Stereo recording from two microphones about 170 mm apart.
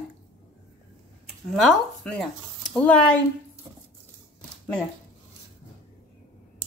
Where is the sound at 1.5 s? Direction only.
5° left (ahead or behind).